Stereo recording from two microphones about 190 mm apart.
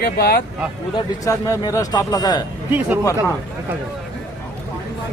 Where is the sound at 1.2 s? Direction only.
20° left (ahead or behind).